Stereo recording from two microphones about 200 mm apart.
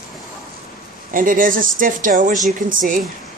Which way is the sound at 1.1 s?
40° right (ahead or behind).